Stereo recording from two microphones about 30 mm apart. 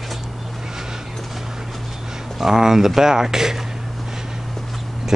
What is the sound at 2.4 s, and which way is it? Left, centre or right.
Speech, centre.